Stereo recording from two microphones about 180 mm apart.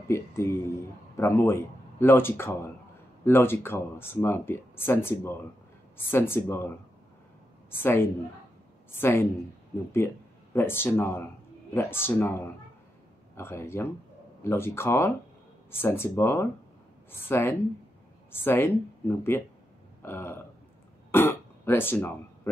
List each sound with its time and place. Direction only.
0.1 s a sound: 15° left (ahead or behind)
1.1 s speech: 15° left (ahead or behind)
7.7 s a man's voice: 15° left (ahead or behind)